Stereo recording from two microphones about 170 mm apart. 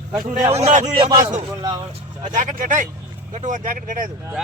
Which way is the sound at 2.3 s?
50° right (ahead or behind).